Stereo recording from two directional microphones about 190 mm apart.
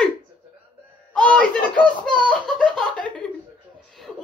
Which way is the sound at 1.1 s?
5° left (ahead or behind).